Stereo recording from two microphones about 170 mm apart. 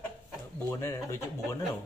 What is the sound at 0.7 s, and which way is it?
Speech, 20° left (ahead or behind).